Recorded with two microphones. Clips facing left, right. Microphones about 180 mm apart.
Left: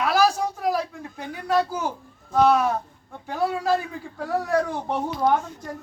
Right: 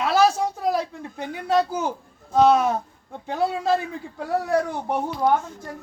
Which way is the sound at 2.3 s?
20° right (ahead or behind).